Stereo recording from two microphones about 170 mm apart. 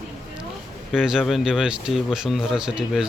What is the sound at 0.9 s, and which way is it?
Speech, 5° right (ahead or behind).